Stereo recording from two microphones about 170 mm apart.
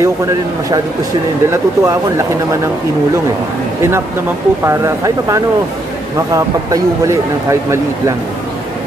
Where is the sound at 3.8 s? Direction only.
15° right (ahead or behind).